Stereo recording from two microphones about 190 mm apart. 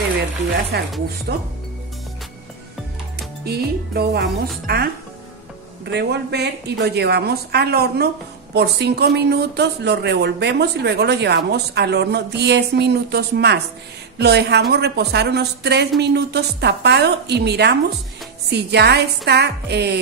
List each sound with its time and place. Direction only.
0.7 s speech: 55° right (ahead or behind)
3.4 s speech: 55° right (ahead or behind)
5.9 s speech: 60° right (ahead or behind)